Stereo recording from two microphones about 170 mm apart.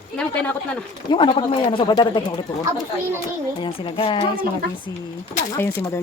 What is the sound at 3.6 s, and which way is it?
Speech, 30° left (ahead or behind).